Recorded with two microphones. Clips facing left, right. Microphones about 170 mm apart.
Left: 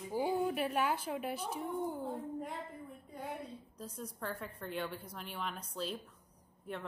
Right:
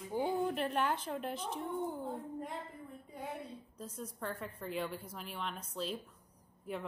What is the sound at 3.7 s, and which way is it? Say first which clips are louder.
A woman's voice: right 1 dB; centre (ahead or behind).